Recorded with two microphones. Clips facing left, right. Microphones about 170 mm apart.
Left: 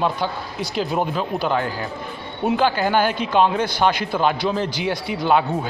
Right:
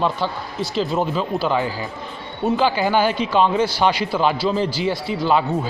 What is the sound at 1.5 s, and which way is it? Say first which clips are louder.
Speech: right 1 dB; 5° right (ahead or behind).